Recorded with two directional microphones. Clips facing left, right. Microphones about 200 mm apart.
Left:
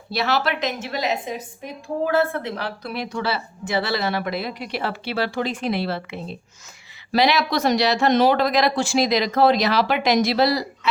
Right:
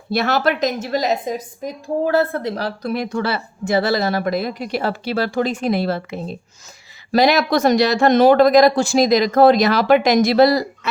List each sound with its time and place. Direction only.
0.1 s a woman's voice: 50° right (ahead or behind)